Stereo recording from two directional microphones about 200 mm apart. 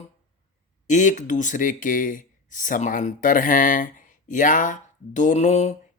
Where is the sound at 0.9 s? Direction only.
40° left (ahead or behind).